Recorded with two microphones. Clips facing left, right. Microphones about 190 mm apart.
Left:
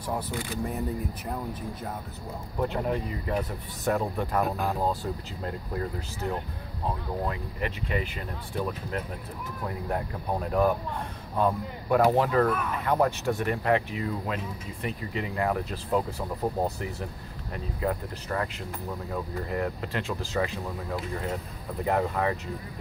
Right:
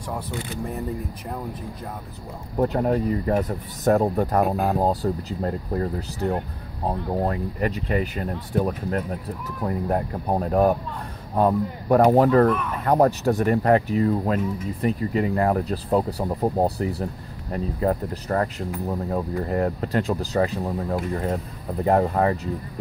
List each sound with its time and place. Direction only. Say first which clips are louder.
2.5 s speech: right 7 dB; 45° right (ahead or behind)